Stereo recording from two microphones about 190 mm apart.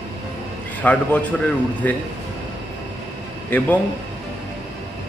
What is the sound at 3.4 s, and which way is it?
Speech, 10° left (ahead or behind).